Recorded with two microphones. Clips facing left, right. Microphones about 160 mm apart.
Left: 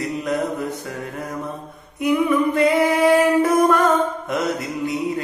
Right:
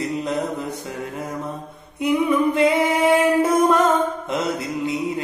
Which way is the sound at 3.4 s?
25° right (ahead or behind).